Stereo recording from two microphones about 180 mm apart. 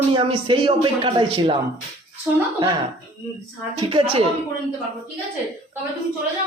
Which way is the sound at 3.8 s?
30° right (ahead or behind).